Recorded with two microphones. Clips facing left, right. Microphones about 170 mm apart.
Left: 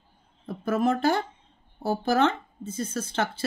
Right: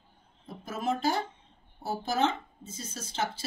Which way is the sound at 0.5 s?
60° left (ahead or behind).